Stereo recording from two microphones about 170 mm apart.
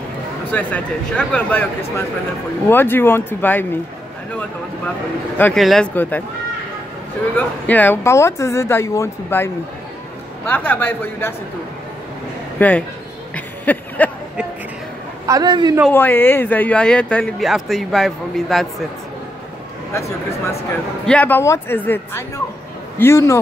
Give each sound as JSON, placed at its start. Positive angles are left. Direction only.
{"t": 0.5, "sound": "speech", "side_deg": 10}
{"t": 2.7, "sound": "speech", "side_deg": 15}
{"t": 5.4, "sound": "speech", "side_deg": 0}
{"t": 7.3, "sound": "speech", "side_deg": 10}
{"t": 12.5, "sound": "speech", "side_deg": 10}
{"t": 13.3, "sound": "a sound", "side_deg": 10}
{"t": 15.2, "sound": "a woman's voice", "side_deg": -20}
{"t": 15.9, "sound": "speech", "side_deg": 10}
{"t": 19.9, "sound": "speech", "side_deg": 15}